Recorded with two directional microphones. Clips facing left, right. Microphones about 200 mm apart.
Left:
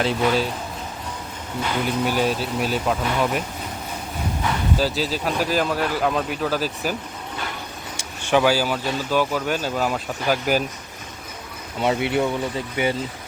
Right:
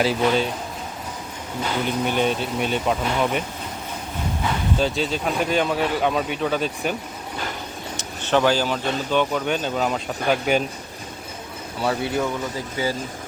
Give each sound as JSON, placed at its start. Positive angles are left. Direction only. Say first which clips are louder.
{"t": 0.0, "sound": "speech", "louder": "right 1 dB", "side_deg": 0}
{"t": 2.0, "sound": "speech", "louder": "even", "side_deg": 5}
{"t": 4.8, "sound": "speech", "louder": "even", "side_deg": 5}
{"t": 7.9, "sound": "speech", "louder": "left 1 dB", "side_deg": 10}
{"t": 11.8, "sound": "speech", "louder": "left 2 dB", "side_deg": 20}